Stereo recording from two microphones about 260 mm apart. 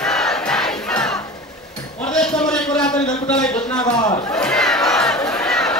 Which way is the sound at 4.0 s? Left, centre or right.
Centre.